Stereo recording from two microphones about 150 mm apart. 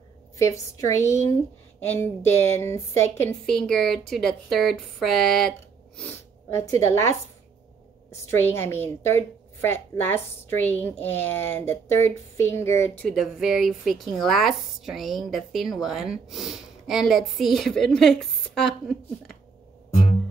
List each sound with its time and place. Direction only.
0.4 s a woman's voice: 20° left (ahead or behind)
3.4 s a woman's voice: 5° left (ahead or behind)
5.9 s sneeze: 10° left (ahead or behind)
6.6 s a woman's voice: 20° left (ahead or behind)
8.3 s a woman's voice: 15° left (ahead or behind)
13.1 s a woman's voice: centre (ahead or behind)